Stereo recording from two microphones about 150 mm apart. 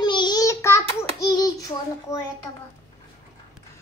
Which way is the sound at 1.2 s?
25° left (ahead or behind).